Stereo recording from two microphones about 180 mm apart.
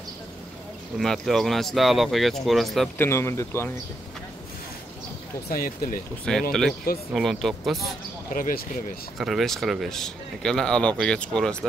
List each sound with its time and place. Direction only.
0.9 s speech: centre (ahead or behind)
3.0 s speech: 15° left (ahead or behind)
5.5 s speech: 50° left (ahead or behind)
6.3 s speech: 5° left (ahead or behind)
8.3 s speech: 50° left (ahead or behind)
9.2 s speech: centre (ahead or behind)